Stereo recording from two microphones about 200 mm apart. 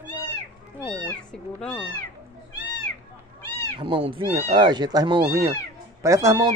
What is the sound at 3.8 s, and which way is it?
Speech, 25° right (ahead or behind).